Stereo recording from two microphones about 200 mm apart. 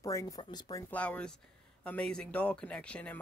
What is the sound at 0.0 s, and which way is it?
Speech, 15° left (ahead or behind).